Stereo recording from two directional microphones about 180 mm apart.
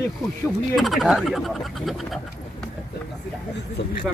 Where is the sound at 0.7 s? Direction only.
Centre (ahead or behind).